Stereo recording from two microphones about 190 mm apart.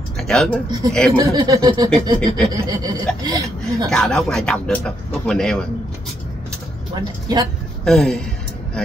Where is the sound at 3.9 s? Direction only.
5° left (ahead or behind).